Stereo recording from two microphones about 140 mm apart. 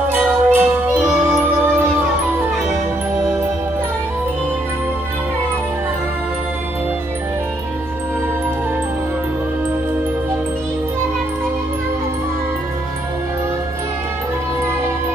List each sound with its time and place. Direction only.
0.1 s music: 15° right (ahead or behind)